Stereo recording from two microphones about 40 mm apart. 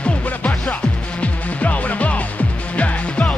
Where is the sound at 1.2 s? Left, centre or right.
Left.